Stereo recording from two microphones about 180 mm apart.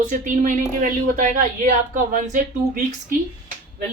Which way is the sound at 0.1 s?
45° right (ahead or behind).